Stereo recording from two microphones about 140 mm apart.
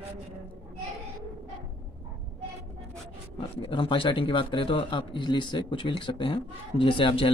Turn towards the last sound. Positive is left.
turn(degrees=40)  # may be behind; listen again after turning